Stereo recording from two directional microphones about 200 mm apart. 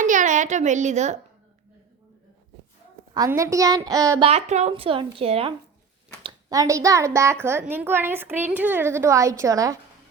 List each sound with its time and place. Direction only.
0.0 s a child's voice: 40° right (ahead or behind)
3.2 s a woman's voice: 15° right (ahead or behind)
4.3 s speech: 35° right (ahead or behind)
6.2 s a woman's voice: 15° right (ahead or behind)